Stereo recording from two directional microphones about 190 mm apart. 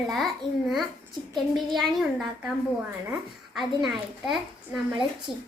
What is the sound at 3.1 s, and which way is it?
A child's voice, 5° right (ahead or behind).